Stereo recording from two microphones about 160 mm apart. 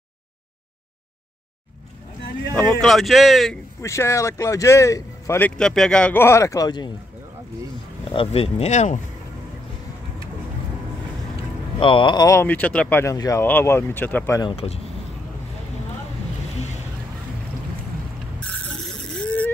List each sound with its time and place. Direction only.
2.5 s speech: 5° left (ahead or behind)
3.8 s speech: 15° left (ahead or behind)
5.6 s speech: 5° left (ahead or behind); by 6.9 s 25° left (ahead or behind)
8.1 s speech: 35° left (ahead or behind)
11.8 s speech: 30° left (ahead or behind); by 13.0 s 10° left (ahead or behind)
13.0 s speech: 20° left (ahead or behind)
14.5 s speech: 35° left (ahead or behind)
18.9 s mechanisms: 10° left (ahead or behind)